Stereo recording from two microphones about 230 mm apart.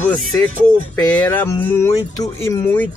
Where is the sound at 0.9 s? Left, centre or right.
Centre.